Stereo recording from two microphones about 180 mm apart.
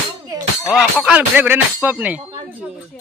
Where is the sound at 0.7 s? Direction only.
5° right (ahead or behind).